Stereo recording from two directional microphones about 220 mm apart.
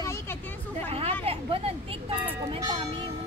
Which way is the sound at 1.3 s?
25° right (ahead or behind).